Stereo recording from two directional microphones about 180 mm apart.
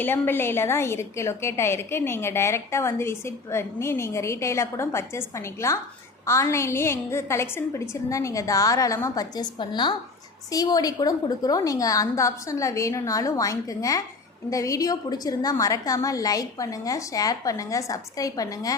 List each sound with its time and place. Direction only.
0.0 s a woman's voice: 10° left (ahead or behind)